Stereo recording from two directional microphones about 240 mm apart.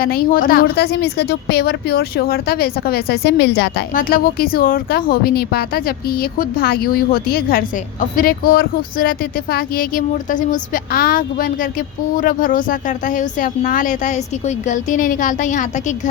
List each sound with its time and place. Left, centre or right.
0.0 s a woman's voice: left